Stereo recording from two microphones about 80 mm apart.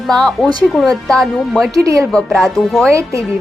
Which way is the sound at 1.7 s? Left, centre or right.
Right.